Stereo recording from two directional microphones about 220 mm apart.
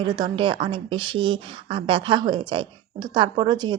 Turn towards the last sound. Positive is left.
turn(degrees=-20)  # may be behind; listen again after turning